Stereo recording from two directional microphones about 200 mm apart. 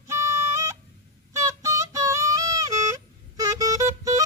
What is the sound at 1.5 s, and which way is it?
Female singing, 15° right (ahead or behind).